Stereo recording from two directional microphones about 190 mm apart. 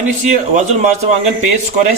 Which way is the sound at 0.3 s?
40° right (ahead or behind).